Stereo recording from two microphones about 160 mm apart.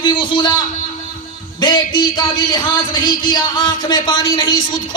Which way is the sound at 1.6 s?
30° left (ahead or behind).